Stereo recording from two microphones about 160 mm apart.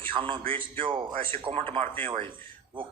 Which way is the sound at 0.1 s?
30° right (ahead or behind).